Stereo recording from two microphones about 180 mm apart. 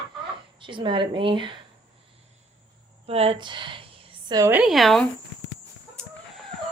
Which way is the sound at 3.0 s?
35° right (ahead or behind).